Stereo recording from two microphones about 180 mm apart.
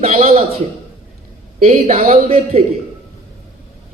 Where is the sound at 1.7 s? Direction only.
35° right (ahead or behind).